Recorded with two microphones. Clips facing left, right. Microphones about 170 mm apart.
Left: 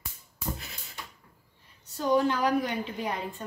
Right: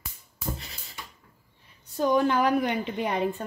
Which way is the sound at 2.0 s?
60° right (ahead or behind).